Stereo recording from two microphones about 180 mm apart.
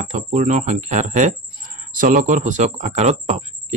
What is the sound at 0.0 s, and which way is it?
Speech, 40° right (ahead or behind).